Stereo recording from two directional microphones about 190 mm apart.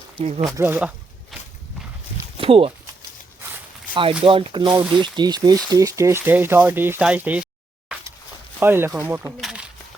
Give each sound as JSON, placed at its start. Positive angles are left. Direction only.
{"t": 0.2, "sound": "speech", "side_deg": -30}
{"t": 0.5, "sound": "a sound", "side_deg": -10}
{"t": 2.4, "sound": "speech", "side_deg": -30}
{"t": 4.2, "sound": "speech", "side_deg": -25}
{"t": 4.8, "sound": "speech", "side_deg": -5}
{"t": 5.0, "sound": "speech", "side_deg": -20}
{"t": 8.5, "sound": "speech", "side_deg": -10}